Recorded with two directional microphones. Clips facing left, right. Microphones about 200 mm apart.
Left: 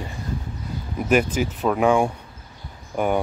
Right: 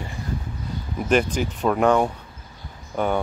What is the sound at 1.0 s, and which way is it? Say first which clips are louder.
Speech: left 1 dB; 5° left (ahead or behind).